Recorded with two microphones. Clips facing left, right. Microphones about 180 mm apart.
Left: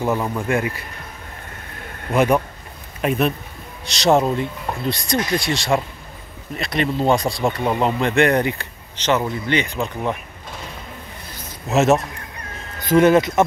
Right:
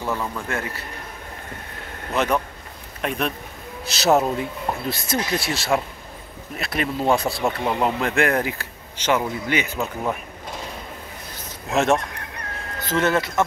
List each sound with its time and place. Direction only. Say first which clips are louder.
0.0 s speech: left 5 dB; 20° left (ahead or behind)
2.1 s speech: left 5 dB; 10° left (ahead or behind); by 10.1 s 5° right (ahead or behind)
11.7 s speech: left 4 dB; 5° left (ahead or behind)